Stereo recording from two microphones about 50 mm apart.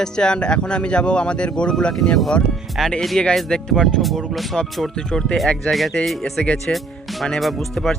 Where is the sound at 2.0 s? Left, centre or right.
Centre.